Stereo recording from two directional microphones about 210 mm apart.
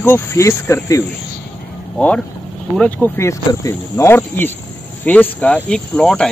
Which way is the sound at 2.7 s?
5° left (ahead or behind).